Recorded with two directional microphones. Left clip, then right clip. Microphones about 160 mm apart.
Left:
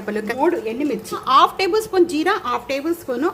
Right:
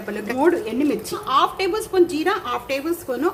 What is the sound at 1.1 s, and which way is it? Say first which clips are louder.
A woman's voice: left 6 dB; 35° left (ahead or behind).